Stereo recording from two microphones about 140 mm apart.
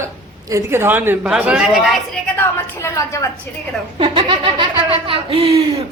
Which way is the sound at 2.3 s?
20° left (ahead or behind).